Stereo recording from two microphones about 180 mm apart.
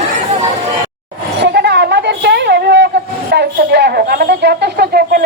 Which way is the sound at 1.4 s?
70° right (ahead or behind).